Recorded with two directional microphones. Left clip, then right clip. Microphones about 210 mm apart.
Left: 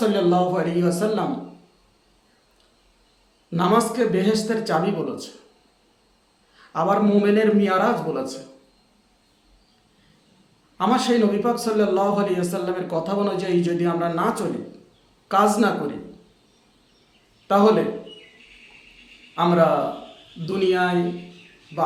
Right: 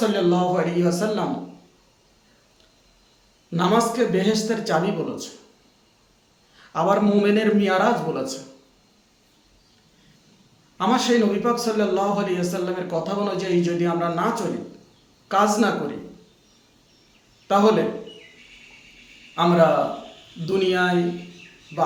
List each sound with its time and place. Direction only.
0.0 s a man's voice: 15° left (ahead or behind)
3.5 s a man's voice: 10° left (ahead or behind)
6.6 s a man's voice: centre (ahead or behind)
10.8 s a man's voice: 10° left (ahead or behind)
17.5 s a man's voice: 10° left (ahead or behind)
19.4 s a man's voice: centre (ahead or behind)